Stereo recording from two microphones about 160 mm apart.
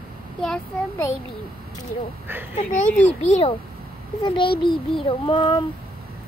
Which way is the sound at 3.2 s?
40° left (ahead or behind).